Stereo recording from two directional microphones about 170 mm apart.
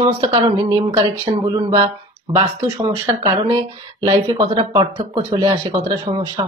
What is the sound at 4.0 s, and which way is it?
Speech, 25° right (ahead or behind).